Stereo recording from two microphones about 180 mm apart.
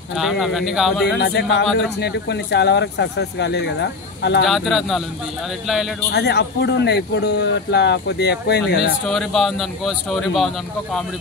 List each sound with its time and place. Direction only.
0.1 s speech: centre (ahead or behind)
1.2 s speech: 70° left (ahead or behind)
4.5 s speech: centre (ahead or behind)
6.1 s speech: 65° left (ahead or behind)
9.0 s speech: centre (ahead or behind)